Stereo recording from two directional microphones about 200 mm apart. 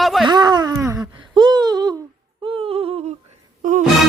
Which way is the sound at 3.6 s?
40° right (ahead or behind).